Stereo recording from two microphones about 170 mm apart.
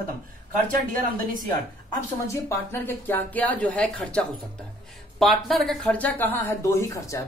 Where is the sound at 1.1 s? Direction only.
55° right (ahead or behind).